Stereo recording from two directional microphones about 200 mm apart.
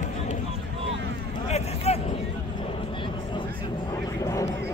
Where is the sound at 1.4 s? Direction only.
30° left (ahead or behind).